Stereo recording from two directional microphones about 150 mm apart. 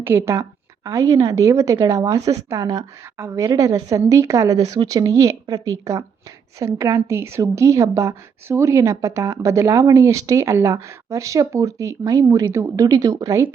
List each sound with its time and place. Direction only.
0.0 s a woman's voice: 15° right (ahead or behind)